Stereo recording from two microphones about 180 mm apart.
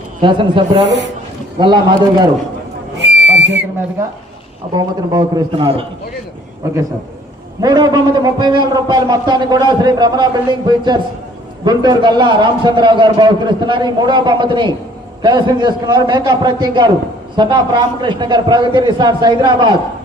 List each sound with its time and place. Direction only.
0.2 s a man's voice: 25° right (ahead or behind)
0.9 s speech: 75° right (ahead or behind)
1.5 s a man's voice: 25° right (ahead or behind)
3.0 s whistle: 70° right (ahead or behind)
4.7 s a man's voice: 20° right (ahead or behind)
7.6 s a man's voice: 25° right (ahead or behind)